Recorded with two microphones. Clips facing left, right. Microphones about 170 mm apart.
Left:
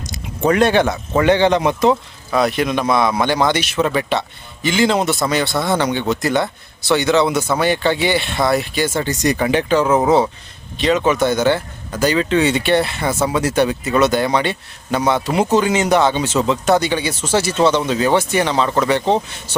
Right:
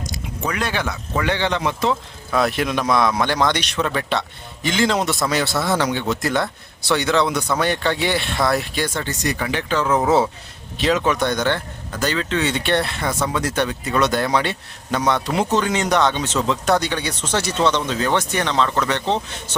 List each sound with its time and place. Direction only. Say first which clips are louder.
0.6 s speech: left 10 dB; 25° left (ahead or behind)
2.3 s speech: left 3 dB; centre (ahead or behind)
9.0 s speech: left 6 dB; 15° left (ahead or behind)